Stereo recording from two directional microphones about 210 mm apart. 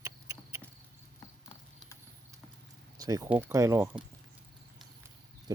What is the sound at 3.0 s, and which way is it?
Speech, 15° right (ahead or behind).